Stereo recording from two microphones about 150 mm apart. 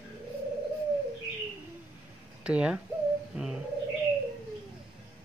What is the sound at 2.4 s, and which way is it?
Speech, 5° right (ahead or behind).